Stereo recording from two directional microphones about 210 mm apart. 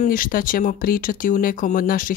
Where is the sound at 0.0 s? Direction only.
40° left (ahead or behind).